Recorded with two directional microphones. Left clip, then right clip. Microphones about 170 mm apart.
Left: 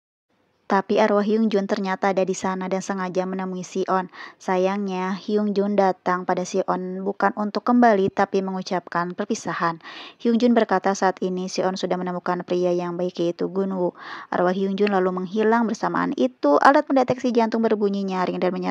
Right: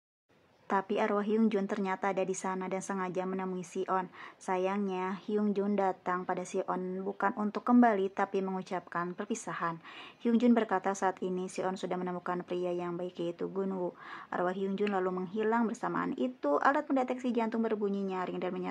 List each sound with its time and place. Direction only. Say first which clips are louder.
0.7 s a woman's voice: left 12 dB; 35° left (ahead or behind)